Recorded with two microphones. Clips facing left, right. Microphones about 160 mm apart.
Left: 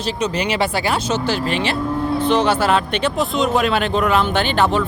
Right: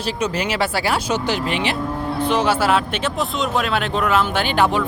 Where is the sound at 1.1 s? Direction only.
15° right (ahead or behind).